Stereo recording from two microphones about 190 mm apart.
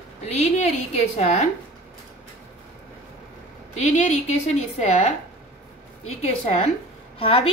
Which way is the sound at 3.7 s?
40° left (ahead or behind).